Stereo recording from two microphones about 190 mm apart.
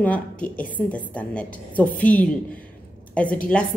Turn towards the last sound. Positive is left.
turn(degrees=5)  # may be behind; listen again after turning